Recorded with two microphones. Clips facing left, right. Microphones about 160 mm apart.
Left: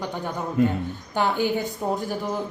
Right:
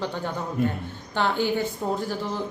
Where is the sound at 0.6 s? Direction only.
90° left.